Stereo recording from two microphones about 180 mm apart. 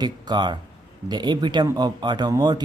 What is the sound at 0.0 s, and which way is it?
Speech, 25° right (ahead or behind).